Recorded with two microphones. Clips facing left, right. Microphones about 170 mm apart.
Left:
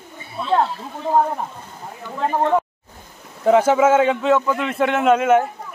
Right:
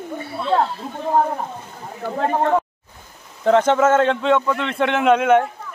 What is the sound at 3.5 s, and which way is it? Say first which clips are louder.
A man's voice: left 1 dB; 5° left (ahead or behind).